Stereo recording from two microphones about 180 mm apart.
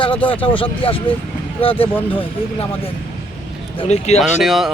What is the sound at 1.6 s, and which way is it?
Speech, 30° left (ahead or behind).